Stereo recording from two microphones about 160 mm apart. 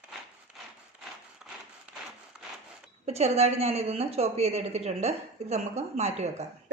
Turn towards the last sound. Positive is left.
turn(degrees=-45)  # may be behind; listen again after turning